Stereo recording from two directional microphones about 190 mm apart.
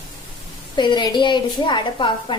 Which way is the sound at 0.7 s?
25° left (ahead or behind).